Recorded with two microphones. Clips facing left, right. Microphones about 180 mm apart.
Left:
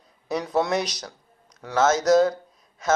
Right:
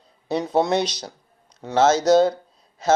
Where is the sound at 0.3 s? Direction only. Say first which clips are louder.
Right 3 dB; 30° right (ahead or behind).